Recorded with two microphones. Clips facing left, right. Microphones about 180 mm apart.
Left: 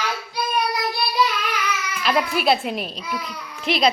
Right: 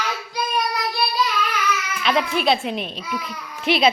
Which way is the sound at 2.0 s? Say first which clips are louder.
Even; 5° left (ahead or behind).